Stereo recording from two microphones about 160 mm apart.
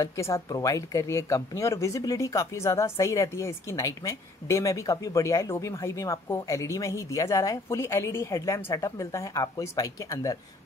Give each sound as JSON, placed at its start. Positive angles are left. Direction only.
{"t": 0.0, "sound": "speech", "side_deg": 20}